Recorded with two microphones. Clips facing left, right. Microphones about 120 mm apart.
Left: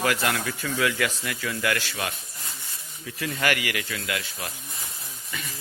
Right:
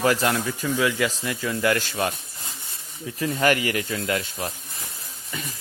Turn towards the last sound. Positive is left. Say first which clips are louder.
# right 6 dB
turn(degrees=-35)  # may be behind; listen again after turning